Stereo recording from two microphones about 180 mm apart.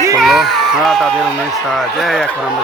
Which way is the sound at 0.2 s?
Centre (ahead or behind).